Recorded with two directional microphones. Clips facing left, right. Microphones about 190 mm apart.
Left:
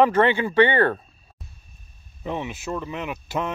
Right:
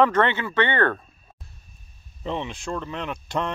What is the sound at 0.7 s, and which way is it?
Speech, 35° left (ahead or behind).